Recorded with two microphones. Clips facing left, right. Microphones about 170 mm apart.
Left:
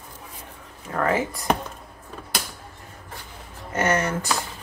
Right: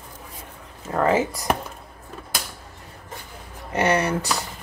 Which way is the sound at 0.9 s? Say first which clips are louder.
Right 3 dB; 20° right (ahead or behind).